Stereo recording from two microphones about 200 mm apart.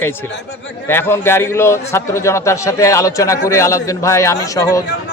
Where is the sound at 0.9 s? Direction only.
10° left (ahead or behind).